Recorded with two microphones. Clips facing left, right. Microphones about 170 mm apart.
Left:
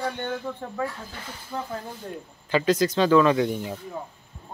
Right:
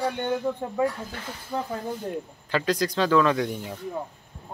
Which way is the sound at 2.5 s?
Centre (ahead or behind).